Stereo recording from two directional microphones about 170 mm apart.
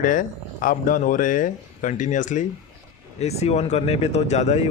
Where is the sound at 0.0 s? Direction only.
50° left (ahead or behind).